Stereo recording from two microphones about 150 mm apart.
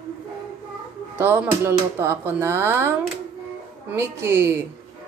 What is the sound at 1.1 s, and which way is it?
Speech, 15° right (ahead or behind).